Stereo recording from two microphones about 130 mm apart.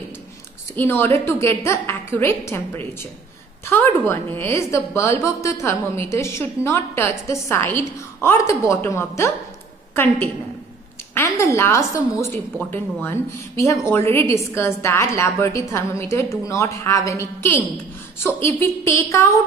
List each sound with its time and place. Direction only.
0.7 s a woman's voice: 15° left (ahead or behind)